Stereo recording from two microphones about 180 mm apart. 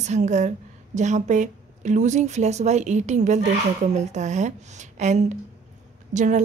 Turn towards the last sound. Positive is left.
turn(degrees=-45)  # may be behind; listen again after turning